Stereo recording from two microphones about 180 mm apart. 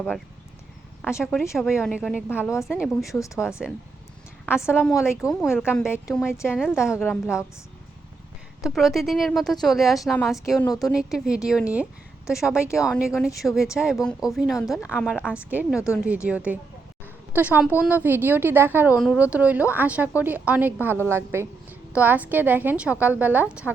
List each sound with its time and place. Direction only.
1.2 s a woman's voice: centre (ahead or behind)
2.3 s a woman's voice: 15° left (ahead or behind)
2.6 s a woman's voice: centre (ahead or behind)
3.1 s a woman's voice: 15° left (ahead or behind)
4.7 s a woman's voice: 10° left (ahead or behind)
6.5 s a woman's voice: 5° right (ahead or behind)
6.9 s a woman's voice: 10° left (ahead or behind)
8.6 s a woman's voice: centre (ahead or behind)
10.7 s a woman's voice: 20° left (ahead or behind)
10.9 s a woman's voice: 5° right (ahead or behind)